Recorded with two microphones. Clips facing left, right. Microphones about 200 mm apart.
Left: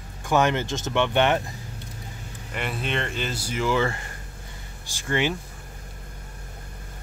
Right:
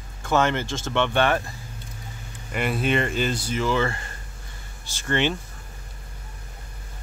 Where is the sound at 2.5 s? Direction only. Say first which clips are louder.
Right 5 dB; 5° right (ahead or behind).